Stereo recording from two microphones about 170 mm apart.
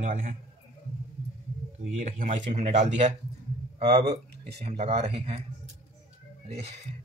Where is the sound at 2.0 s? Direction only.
50° right (ahead or behind).